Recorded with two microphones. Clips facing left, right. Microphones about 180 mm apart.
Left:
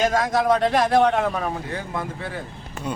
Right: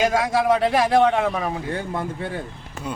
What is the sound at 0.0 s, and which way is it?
A man's voice, 10° right (ahead or behind).